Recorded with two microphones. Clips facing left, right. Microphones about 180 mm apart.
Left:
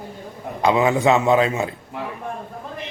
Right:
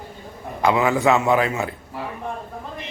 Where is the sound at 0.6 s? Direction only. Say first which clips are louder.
Left 1 dB; 20° left (ahead or behind).